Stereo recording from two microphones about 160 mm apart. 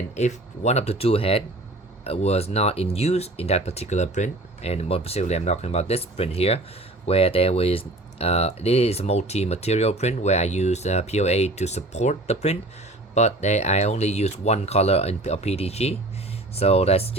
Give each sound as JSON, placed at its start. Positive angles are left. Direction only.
{"t": 0.2, "sound": "speech", "side_deg": 45}